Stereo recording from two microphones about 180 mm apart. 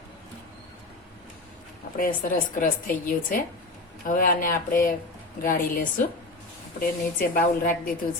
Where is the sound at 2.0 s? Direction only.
50° left (ahead or behind).